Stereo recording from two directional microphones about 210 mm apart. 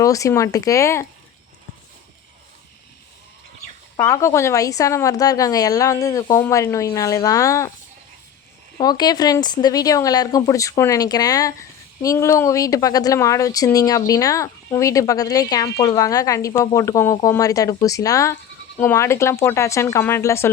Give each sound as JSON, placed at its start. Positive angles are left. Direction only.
{"t": 0.0, "sound": "a woman's voice", "side_deg": 15}
{"t": 3.9, "sound": "a woman's voice", "side_deg": 15}
{"t": 8.8, "sound": "a woman's voice", "side_deg": 20}